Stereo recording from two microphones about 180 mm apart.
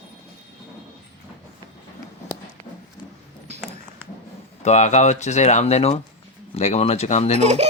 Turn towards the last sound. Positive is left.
turn(degrees=-35)  # may be behind; listen again after turning